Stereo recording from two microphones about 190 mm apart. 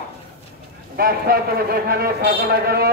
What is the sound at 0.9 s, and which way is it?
A man's voice, 55° right (ahead or behind).